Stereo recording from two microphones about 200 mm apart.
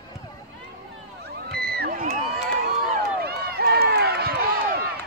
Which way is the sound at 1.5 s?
50° right (ahead or behind).